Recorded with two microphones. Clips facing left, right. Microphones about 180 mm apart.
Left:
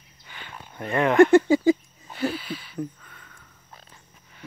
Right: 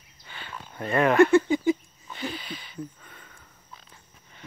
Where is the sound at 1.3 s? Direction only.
90° left.